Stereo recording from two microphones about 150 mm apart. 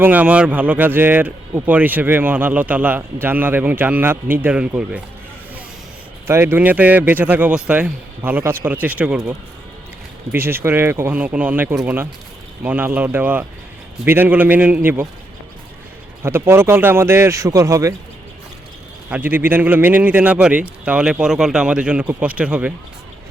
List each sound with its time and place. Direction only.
0.0 s speech: 10° right (ahead or behind)
6.2 s speech: 15° right (ahead or behind)
10.3 s speech: 15° right (ahead or behind)
16.2 s speech: 15° right (ahead or behind)
19.1 s speech: 10° right (ahead or behind)